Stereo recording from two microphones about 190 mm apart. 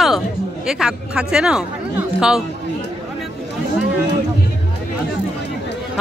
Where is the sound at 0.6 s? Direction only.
5° right (ahead or behind).